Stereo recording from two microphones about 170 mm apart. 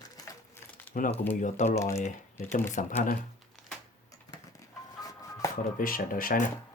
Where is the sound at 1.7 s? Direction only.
15° left (ahead or behind).